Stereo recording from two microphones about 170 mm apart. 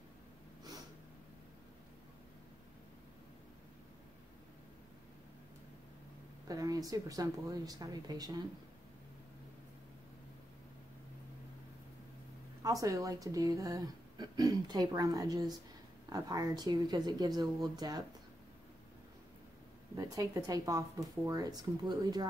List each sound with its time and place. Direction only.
6.4 s speech: 20° right (ahead or behind)
12.6 s speech: 20° right (ahead or behind)
20.0 s speech: 20° right (ahead or behind)